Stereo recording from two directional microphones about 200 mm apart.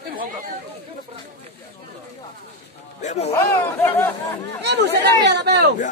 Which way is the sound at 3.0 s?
35° left (ahead or behind).